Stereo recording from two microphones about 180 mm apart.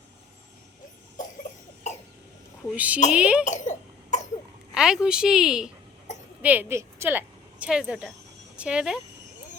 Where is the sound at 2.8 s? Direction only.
10° right (ahead or behind).